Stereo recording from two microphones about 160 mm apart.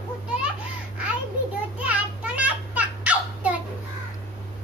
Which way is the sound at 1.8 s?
10° right (ahead or behind).